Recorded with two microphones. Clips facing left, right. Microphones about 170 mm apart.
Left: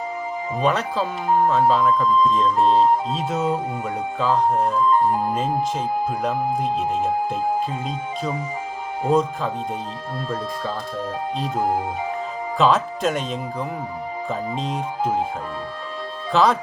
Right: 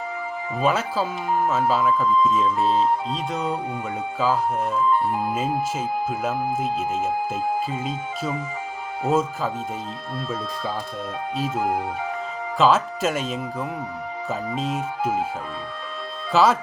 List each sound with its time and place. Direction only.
0.6 s speech: 5° right (ahead or behind)
5.7 s speech: 5° right (ahead or behind)
11.5 s speech: 35° left (ahead or behind)
12.5 s speech: centre (ahead or behind)
16.3 s speech: 5° right (ahead or behind)